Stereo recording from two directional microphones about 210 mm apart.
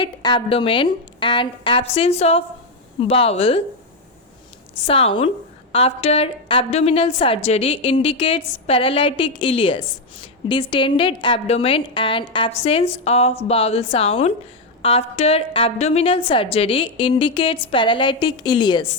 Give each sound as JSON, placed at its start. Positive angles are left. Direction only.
{"t": 0.0, "sound": "a woman's voice", "side_deg": 20}
{"t": 4.9, "sound": "a woman's voice", "side_deg": 25}